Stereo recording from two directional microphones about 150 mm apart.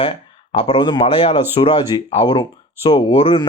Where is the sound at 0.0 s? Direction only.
35° left (ahead or behind).